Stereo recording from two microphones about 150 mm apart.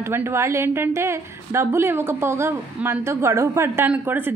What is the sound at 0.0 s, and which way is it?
A woman's voice, 15° right (ahead or behind).